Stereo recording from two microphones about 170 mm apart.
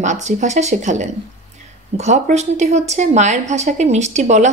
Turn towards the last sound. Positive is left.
turn(degrees=-45)  # may be behind; listen again after turning